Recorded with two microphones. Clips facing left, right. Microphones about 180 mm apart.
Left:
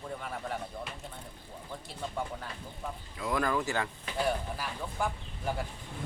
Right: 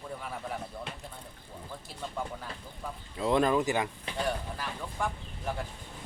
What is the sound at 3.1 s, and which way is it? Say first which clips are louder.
Speech: right 5 dB; 25° right (ahead or behind).